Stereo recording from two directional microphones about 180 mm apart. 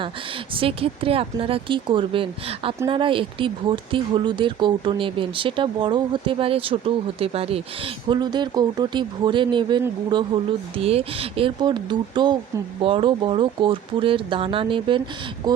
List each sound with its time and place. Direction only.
0.5 s speech: 30° right (ahead or behind)